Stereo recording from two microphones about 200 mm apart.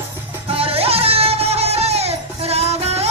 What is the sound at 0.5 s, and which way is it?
Music, 30° right (ahead or behind).